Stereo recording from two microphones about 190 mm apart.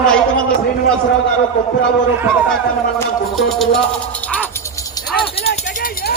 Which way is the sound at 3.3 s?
Centre (ahead or behind).